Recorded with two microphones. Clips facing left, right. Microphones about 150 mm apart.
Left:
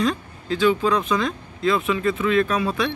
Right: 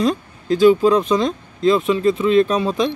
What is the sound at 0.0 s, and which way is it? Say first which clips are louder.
Speech: right 4 dB; 40° right (ahead or behind).